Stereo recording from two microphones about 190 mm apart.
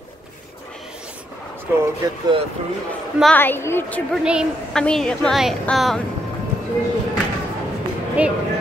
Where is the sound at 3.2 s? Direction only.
10° left (ahead or behind).